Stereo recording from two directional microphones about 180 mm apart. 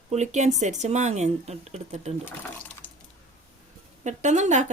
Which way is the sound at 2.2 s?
10° left (ahead or behind).